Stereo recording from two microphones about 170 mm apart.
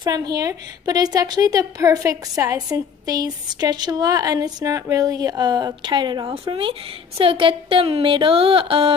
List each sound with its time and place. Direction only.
0.0 s a woman's voice: 25° right (ahead or behind)